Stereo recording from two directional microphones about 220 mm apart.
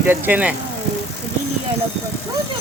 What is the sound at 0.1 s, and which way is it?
Speech, 10° right (ahead or behind).